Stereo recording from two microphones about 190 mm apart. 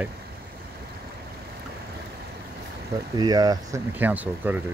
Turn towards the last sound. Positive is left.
turn(degrees=-10)  # may be behind; listen again after turning